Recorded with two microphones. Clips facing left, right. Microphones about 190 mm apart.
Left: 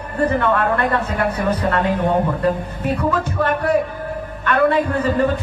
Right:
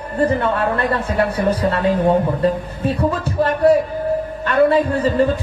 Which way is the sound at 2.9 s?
30° right (ahead or behind).